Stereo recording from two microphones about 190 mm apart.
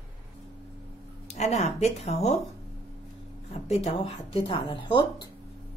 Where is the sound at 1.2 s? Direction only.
35° left (ahead or behind).